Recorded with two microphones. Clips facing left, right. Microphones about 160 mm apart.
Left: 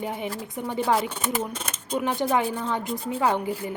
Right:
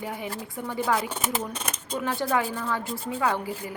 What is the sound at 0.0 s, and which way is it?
A woman's voice, 20° left (ahead or behind).